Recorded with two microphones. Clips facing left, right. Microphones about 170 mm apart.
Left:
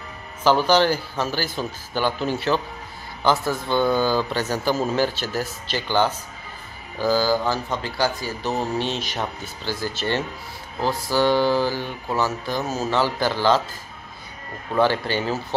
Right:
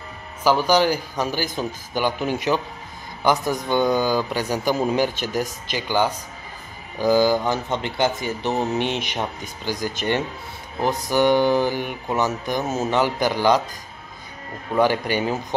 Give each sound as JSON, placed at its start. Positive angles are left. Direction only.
{"t": 0.4, "sound": "speech", "side_deg": -10}
{"t": 14.8, "sound": "speech", "side_deg": -15}